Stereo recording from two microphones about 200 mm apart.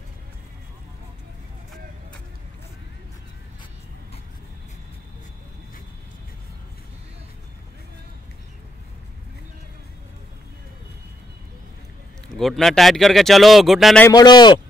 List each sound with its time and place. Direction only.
12.3 s speech: centre (ahead or behind)
14.0 s a man's voice: 20° left (ahead or behind)